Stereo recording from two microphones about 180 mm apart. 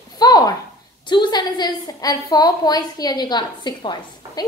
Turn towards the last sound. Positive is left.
turn(degrees=25)  # may be behind; listen again after turning